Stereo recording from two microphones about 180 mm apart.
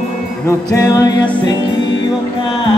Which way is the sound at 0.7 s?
20° left (ahead or behind).